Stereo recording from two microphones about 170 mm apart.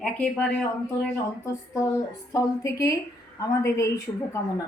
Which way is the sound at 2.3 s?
20° left (ahead or behind).